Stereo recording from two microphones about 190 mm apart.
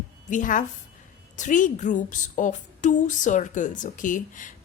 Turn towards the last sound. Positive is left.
turn(degrees=45)  # may be behind; listen again after turning